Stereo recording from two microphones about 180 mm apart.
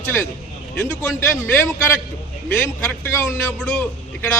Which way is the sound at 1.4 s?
15° left (ahead or behind).